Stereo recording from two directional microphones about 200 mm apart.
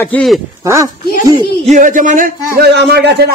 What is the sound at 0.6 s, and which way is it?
Speech, 15° right (ahead or behind).